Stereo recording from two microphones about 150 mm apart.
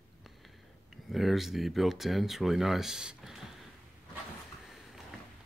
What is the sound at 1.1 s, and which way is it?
Speech, centre (ahead or behind).